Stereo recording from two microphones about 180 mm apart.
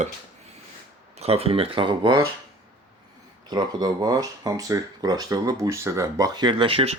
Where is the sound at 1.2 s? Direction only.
35° right (ahead or behind).